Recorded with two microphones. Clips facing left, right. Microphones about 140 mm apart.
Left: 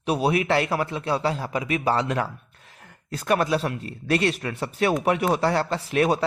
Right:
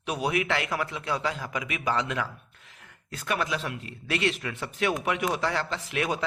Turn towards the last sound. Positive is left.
turn(degrees=40)  # may be behind; listen again after turning